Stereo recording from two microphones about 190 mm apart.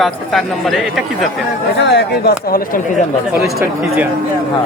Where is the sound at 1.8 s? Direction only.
60° left (ahead or behind).